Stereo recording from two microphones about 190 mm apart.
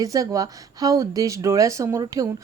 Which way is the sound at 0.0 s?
20° right (ahead or behind).